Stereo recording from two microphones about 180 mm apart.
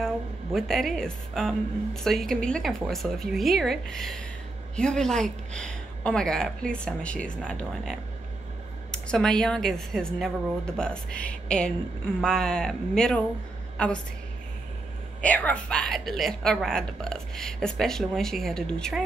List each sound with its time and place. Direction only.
0.0 s a woman's voice: centre (ahead or behind)
15.2 s a woman's voice: 10° left (ahead or behind)